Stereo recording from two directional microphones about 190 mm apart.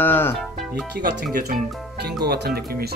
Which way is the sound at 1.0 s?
50° right (ahead or behind).